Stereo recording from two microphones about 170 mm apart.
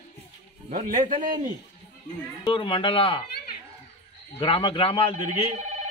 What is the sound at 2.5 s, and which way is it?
Speech, 30° left (ahead or behind).